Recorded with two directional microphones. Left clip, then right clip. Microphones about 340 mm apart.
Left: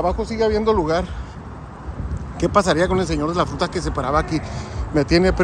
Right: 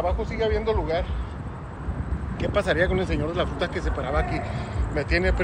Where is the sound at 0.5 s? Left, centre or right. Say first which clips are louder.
Left 7 dB; left.